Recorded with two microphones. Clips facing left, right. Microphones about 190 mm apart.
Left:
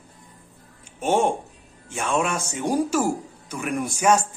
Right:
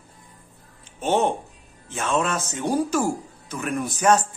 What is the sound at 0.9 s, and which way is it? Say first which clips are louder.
Speech: left 1 dB; 10° left (ahead or behind).